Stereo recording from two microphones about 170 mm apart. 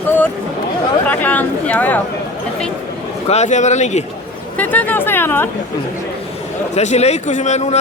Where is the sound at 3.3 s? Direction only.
45° left (ahead or behind).